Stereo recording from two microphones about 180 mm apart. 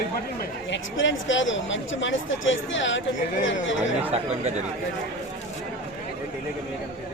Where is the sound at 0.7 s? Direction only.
90° left.